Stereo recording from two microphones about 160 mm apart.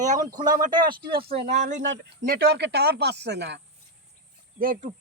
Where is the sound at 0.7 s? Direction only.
30° right (ahead or behind).